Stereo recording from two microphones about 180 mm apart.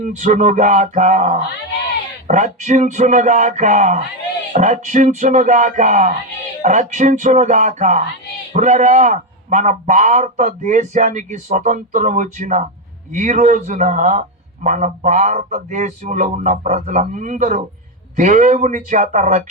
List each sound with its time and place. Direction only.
0.0 s a man's voice: 45° right (ahead or behind)